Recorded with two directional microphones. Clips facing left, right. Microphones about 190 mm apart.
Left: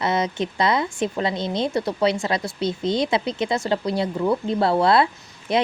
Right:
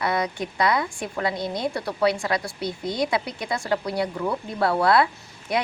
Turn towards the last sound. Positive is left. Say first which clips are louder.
# left 4 dB
turn(degrees=25)  # may be behind; listen again after turning